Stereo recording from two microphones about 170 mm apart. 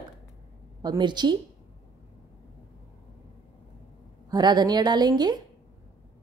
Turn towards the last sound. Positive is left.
turn(degrees=-25)  # may be behind; listen again after turning